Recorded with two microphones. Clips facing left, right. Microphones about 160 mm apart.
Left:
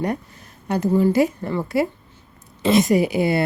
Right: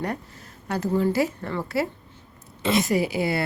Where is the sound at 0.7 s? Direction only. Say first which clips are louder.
Left 5 dB; 15° left (ahead or behind).